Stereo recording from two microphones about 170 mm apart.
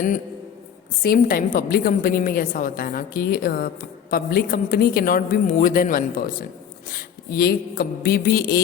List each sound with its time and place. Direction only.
1.0 s a woman's voice: 60° left (ahead or behind)